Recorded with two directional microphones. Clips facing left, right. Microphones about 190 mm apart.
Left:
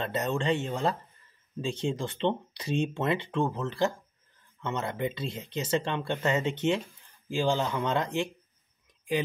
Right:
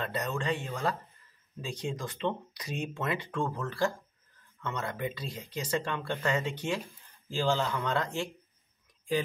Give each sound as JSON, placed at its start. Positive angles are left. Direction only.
{"t": 0.0, "sound": "speech", "side_deg": 25}